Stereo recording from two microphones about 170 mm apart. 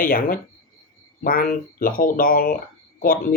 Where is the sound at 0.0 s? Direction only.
55° left (ahead or behind).